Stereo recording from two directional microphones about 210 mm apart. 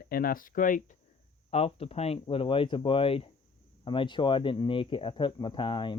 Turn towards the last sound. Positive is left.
turn(degrees=20)  # may be behind; listen again after turning